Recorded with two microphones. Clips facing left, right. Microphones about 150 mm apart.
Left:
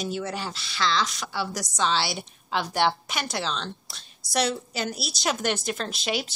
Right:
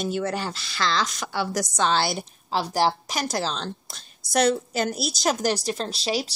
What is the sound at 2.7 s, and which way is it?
A woman's voice, 35° right (ahead or behind).